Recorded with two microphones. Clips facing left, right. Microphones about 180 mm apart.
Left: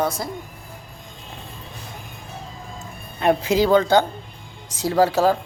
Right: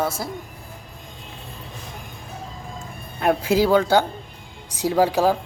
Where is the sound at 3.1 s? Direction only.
5° right (ahead or behind).